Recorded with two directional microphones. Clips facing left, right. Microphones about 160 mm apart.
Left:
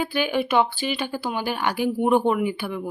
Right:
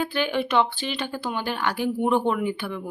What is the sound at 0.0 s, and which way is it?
A woman's voice, 10° left (ahead or behind).